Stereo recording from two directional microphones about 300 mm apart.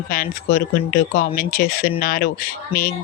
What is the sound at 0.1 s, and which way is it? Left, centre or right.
Speech, left.